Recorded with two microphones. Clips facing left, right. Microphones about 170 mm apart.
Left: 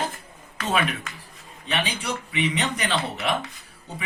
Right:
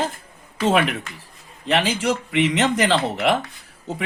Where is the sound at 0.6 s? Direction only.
75° right (ahead or behind).